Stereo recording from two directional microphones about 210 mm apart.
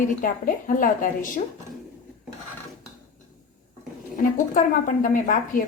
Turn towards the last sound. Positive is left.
turn(degrees=40)  # may be behind; listen again after turning